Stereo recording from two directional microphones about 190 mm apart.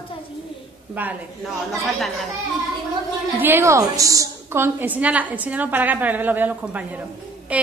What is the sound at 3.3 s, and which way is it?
A woman's voice, 10° right (ahead or behind).